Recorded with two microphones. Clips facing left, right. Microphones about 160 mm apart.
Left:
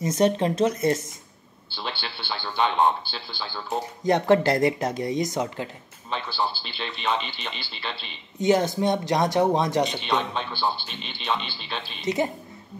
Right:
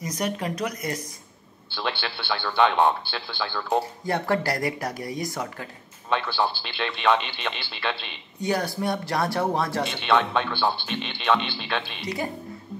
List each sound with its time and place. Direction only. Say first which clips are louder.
0.0 s speech: left 7 dB; 25° left (ahead or behind)
1.7 s speech: right 4 dB; 60° right (ahead or behind)
4.0 s speech: left 6 dB; 20° left (ahead or behind)
6.0 s speech: right 3 dB; 60° right (ahead or behind)
8.4 s speech: left 5 dB; 20° left (ahead or behind)
9.9 s speech: right 4 dB; 60° right (ahead or behind)
12.0 s speech: left 5 dB; 20° left (ahead or behind)